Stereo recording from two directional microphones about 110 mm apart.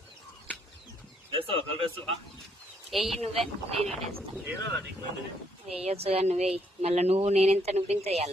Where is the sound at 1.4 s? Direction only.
55° right (ahead or behind).